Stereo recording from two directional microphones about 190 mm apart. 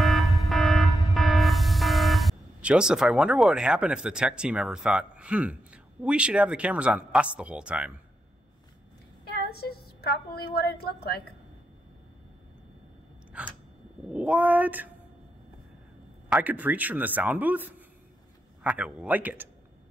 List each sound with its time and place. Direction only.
0.0 s music: centre (ahead or behind)
9.5 s a woman's voice: 55° left (ahead or behind)
13.4 s speech: 5° right (ahead or behind)
16.3 s speech: 5° right (ahead or behind)